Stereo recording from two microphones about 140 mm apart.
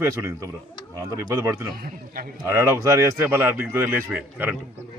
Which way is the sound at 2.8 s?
25° right (ahead or behind).